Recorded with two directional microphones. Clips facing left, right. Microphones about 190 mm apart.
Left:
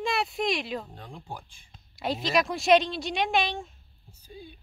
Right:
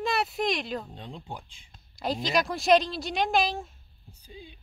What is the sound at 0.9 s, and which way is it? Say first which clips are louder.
Speech: right 2 dB; 20° right (ahead or behind).